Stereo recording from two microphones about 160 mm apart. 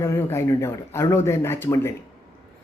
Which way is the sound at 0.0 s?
15° left (ahead or behind).